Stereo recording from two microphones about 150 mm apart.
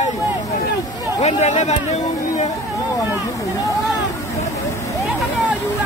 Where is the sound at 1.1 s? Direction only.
50° left (ahead or behind).